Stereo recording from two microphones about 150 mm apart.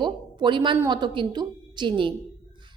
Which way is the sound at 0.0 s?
30° right (ahead or behind).